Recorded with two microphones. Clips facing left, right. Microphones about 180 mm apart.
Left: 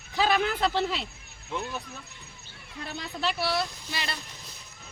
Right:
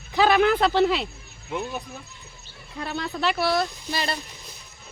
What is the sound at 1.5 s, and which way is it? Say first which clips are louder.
Speech: right 4 dB; 15° right (ahead or behind).